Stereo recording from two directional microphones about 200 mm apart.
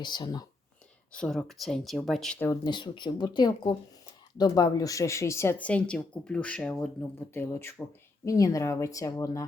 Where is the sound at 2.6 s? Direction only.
20° left (ahead or behind).